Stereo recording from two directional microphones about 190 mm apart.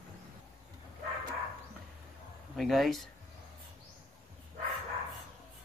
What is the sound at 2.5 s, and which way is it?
Speech, centre (ahead or behind).